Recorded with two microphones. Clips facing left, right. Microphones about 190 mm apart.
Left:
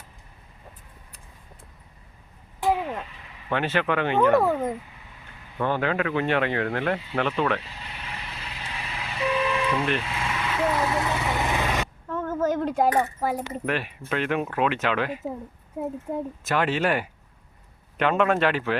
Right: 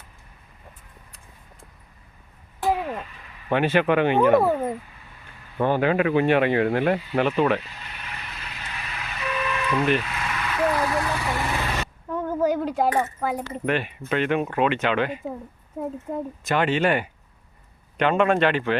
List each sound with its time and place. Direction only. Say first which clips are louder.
3.5 s speech: right 5 dB; 15° right (ahead or behind)
7.6 s vehicle: left 1 dB; 25° left (ahead or behind)
12.0 s a sound: right 3 dB; 15° right (ahead or behind)
12.9 s coin: even; 15° left (ahead or behind)
13.4 s speech: right 3 dB; 5° left (ahead or behind)